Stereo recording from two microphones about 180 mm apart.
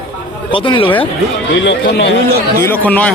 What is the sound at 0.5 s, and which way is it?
Speech, 30° left (ahead or behind).